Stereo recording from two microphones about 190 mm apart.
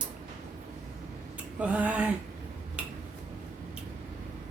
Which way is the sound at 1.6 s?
5° right (ahead or behind).